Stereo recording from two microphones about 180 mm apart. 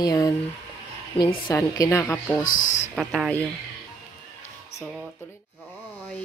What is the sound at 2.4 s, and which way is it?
Speech, 45° left (ahead or behind).